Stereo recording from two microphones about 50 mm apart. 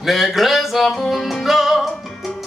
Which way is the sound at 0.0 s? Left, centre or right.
Centre.